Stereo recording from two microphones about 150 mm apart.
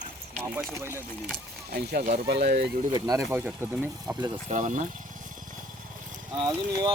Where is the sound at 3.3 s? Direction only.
15° right (ahead or behind).